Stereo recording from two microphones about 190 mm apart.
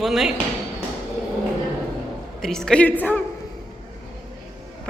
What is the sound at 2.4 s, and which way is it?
Speech, 5° left (ahead or behind).